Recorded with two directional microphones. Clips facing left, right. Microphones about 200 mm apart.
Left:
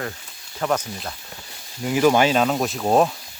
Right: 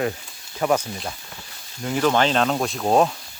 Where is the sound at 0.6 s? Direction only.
10° right (ahead or behind).